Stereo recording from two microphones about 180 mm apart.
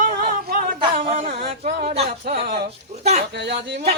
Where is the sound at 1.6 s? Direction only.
35° right (ahead or behind).